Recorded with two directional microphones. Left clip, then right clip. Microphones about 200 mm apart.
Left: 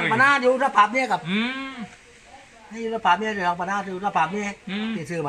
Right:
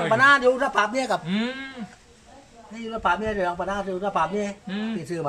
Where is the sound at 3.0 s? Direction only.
25° right (ahead or behind).